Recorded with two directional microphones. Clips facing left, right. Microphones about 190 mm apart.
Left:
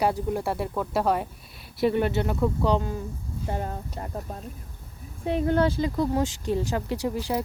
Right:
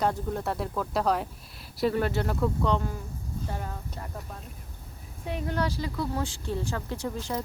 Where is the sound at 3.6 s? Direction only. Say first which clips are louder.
Left 5 dB; 35° left (ahead or behind).